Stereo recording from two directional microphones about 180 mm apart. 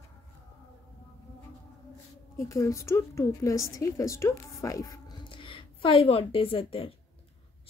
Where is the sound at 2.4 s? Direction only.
15° left (ahead or behind).